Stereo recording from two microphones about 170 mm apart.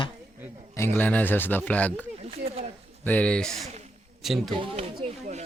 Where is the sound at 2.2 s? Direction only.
35° right (ahead or behind).